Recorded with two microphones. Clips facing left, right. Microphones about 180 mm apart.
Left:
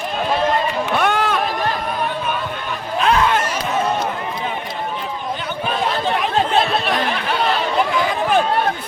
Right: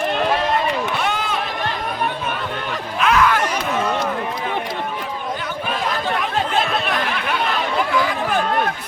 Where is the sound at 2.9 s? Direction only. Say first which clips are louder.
Left 1 dB; 30° left (ahead or behind).